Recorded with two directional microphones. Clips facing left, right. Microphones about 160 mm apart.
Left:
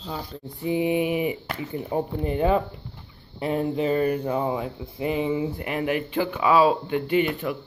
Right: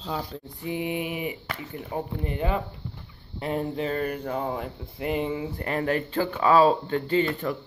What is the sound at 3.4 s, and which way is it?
Speech, 5° left (ahead or behind).